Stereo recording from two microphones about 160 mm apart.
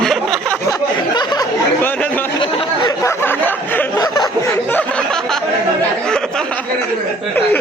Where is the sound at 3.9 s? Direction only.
25° left (ahead or behind); by 5.5 s 5° left (ahead or behind).